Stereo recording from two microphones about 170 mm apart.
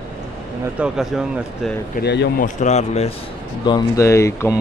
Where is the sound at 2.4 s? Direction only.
45° left (ahead or behind).